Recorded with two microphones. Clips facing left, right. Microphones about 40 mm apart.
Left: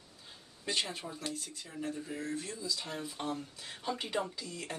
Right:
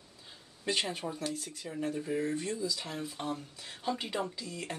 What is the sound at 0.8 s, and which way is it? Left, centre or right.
Speech, centre.